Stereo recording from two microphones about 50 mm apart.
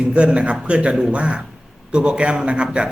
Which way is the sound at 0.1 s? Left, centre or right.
Right.